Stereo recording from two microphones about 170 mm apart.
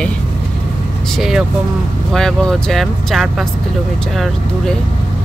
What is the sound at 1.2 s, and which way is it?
Speech, centre (ahead or behind).